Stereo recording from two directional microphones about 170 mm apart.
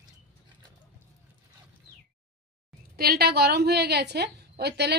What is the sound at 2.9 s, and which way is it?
A woman's voice, 65° right (ahead or behind).